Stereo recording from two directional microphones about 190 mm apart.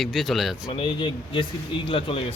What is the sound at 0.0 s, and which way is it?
Speech, centre (ahead or behind).